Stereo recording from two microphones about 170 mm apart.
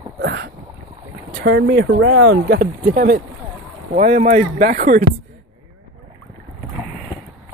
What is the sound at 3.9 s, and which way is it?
Speech, 45° right (ahead or behind).